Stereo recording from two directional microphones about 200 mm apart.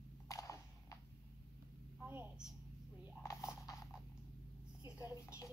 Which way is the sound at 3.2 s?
15° left (ahead or behind).